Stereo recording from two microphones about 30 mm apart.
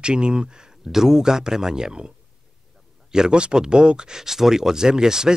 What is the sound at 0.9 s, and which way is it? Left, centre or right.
Speech, centre.